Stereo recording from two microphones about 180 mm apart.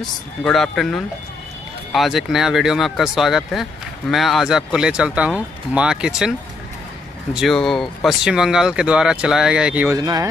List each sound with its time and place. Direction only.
0.5 s speech: centre (ahead or behind)
7.3 s speech: centre (ahead or behind)
9.9 s speech: 20° right (ahead or behind)